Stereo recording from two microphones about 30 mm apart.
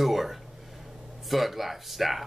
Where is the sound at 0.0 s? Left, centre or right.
Centre.